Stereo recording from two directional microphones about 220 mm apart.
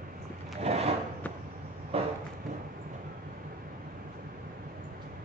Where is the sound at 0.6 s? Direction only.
30° right (ahead or behind).